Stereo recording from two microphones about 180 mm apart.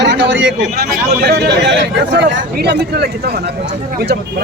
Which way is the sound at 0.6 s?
55° right (ahead or behind).